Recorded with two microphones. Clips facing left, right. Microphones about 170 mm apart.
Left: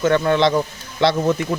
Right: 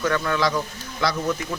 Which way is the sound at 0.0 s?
30° left (ahead or behind).